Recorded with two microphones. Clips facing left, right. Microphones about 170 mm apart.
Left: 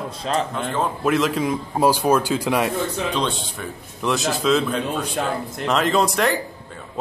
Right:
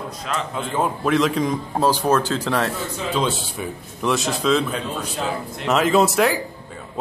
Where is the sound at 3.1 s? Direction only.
5° right (ahead or behind).